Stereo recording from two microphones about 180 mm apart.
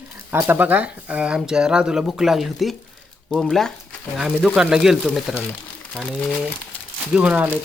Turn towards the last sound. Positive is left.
turn(degrees=-5)  # may be behind; listen again after turning